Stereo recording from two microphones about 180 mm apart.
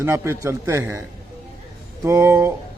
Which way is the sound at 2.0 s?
15° right (ahead or behind).